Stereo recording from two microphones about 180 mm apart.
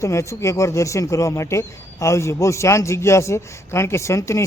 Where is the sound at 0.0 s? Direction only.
15° left (ahead or behind).